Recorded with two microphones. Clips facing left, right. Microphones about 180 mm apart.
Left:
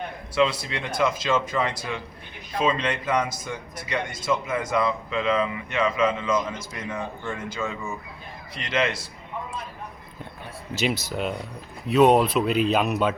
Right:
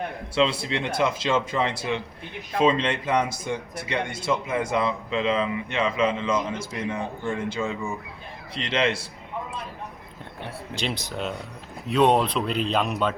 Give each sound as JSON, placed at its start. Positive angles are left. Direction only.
{"t": 0.3, "sound": "speech", "side_deg": -25}
{"t": 8.5, "sound": "speech", "side_deg": -30}
{"t": 10.8, "sound": "speech", "side_deg": 5}